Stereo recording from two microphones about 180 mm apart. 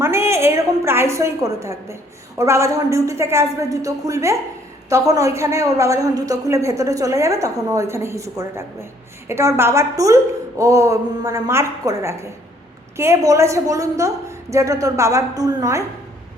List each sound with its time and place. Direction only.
0.0 s a woman's voice: 15° right (ahead or behind)